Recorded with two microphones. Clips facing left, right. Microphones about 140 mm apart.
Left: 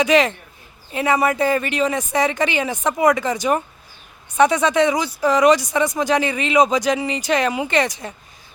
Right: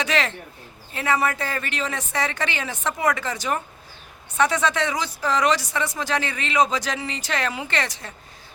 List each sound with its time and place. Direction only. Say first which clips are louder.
0.0 s speech: left 8 dB; 15° left (ahead or behind)